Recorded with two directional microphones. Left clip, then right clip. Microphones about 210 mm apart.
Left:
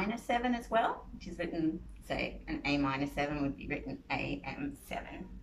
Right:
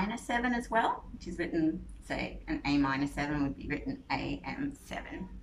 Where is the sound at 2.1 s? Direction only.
10° left (ahead or behind).